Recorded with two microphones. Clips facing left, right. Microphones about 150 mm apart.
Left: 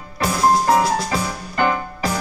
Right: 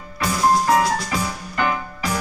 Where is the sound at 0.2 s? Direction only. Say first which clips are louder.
Left 2 dB; 25° left (ahead or behind).